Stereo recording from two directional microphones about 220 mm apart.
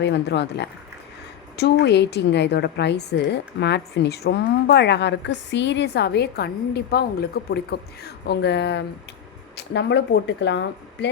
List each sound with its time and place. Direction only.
0.0 s a woman's voice: 50° left (ahead or behind)